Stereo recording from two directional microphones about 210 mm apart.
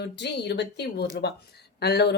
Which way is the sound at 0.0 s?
55° left (ahead or behind).